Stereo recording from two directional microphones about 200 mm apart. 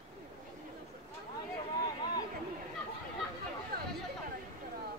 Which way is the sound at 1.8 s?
20° left (ahead or behind).